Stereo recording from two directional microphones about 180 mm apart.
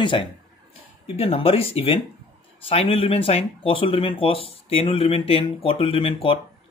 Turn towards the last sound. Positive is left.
turn(degrees=30)  # may be behind; listen again after turning